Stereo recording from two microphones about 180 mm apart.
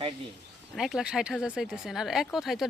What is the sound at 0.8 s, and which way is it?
Speech, 5° right (ahead or behind).